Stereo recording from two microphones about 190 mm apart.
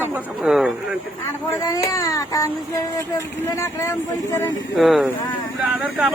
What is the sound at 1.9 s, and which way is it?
Speech, 15° left (ahead or behind).